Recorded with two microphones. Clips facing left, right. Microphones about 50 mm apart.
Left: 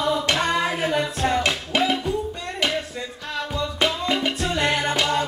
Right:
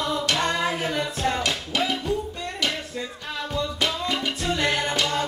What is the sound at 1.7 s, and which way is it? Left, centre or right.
Music, left.